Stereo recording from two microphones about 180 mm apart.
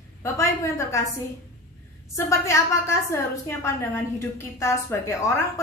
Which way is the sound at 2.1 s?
15° left (ahead or behind).